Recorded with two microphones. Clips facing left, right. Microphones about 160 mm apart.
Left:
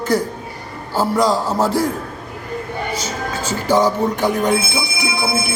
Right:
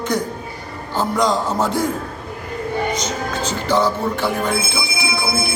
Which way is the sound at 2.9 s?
5° left (ahead or behind).